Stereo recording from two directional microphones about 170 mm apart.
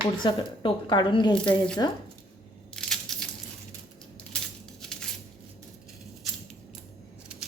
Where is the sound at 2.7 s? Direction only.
5° left (ahead or behind).